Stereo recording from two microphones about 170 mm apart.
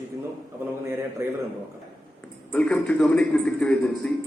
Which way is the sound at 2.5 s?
5° left (ahead or behind).